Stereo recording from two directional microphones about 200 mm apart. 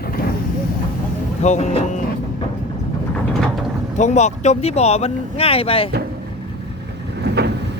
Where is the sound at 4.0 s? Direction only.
35° left (ahead or behind).